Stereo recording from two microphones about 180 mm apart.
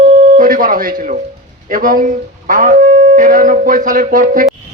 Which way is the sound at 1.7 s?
50° right (ahead or behind).